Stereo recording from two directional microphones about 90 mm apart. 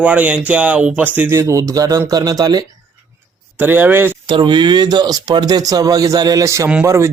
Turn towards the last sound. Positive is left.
turn(degrees=-30)  # may be behind; listen again after turning